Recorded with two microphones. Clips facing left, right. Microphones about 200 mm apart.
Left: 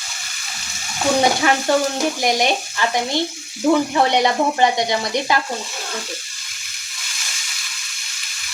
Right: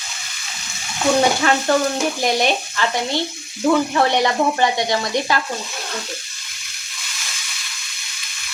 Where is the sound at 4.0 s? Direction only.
15° left (ahead or behind).